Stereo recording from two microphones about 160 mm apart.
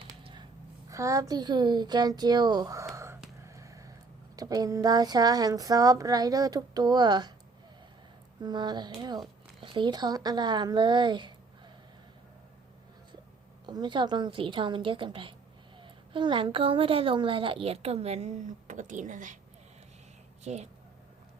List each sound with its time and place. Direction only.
0.0 s a sound: 30° right (ahead or behind)
0.9 s child singing: 20° right (ahead or behind)
3.4 s a sound: 20° right (ahead or behind)
4.4 s child singing: 25° right (ahead or behind)
8.4 s child singing: 25° right (ahead or behind)
9.6 s speech: 30° right (ahead or behind)
13.7 s a woman's voice: 30° right (ahead or behind); by 19.4 s 55° right (ahead or behind)
20.4 s speech: 45° right (ahead or behind)